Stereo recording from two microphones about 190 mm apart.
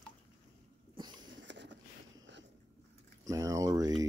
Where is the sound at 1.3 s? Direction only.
70° right (ahead or behind).